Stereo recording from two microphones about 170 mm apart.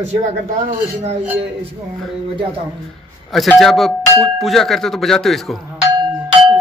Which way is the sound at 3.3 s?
Centre (ahead or behind).